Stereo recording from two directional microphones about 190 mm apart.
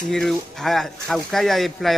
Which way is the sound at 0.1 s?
Centre (ahead or behind).